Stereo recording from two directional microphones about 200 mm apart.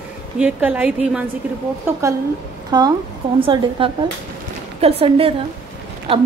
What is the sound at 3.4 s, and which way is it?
Speech, 25° right (ahead or behind).